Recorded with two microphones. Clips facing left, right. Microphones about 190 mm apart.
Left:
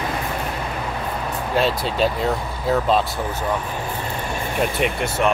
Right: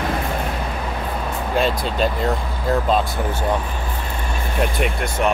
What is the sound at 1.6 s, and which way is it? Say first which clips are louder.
Speech: even; centre (ahead or behind).